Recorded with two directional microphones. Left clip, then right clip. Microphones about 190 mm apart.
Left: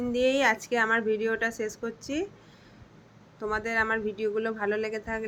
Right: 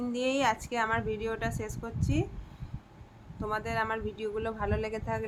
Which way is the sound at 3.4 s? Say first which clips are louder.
Left 4 dB; 10° left (ahead or behind).